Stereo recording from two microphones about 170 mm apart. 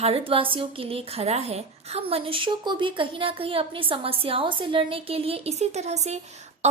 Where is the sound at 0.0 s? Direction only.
35° right (ahead or behind).